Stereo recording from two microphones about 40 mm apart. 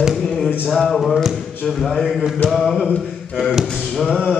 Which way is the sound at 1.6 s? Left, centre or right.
Centre.